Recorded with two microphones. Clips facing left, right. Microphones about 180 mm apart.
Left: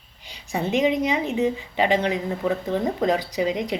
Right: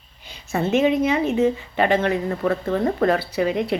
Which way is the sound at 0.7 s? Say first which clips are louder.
Right 3 dB; 15° left (ahead or behind).